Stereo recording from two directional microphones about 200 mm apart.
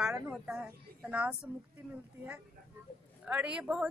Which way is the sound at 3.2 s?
5° right (ahead or behind).